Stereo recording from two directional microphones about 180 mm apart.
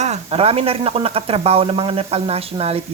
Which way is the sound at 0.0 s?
35° right (ahead or behind).